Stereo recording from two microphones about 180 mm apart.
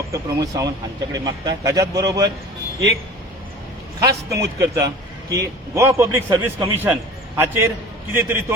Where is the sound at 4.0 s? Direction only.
20° right (ahead or behind).